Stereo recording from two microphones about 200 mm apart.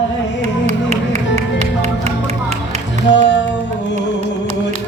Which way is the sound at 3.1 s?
60° left (ahead or behind).